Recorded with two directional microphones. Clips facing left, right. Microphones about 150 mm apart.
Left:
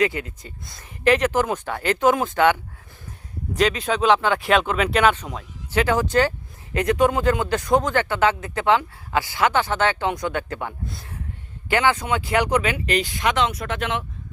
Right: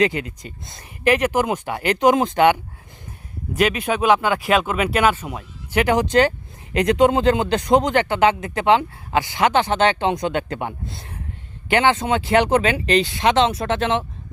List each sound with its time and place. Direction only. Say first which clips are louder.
0.0 s speech: right 3 dB; 20° right (ahead or behind)